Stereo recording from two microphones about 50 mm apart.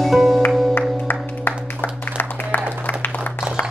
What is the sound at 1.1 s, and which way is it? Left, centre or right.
Music, left.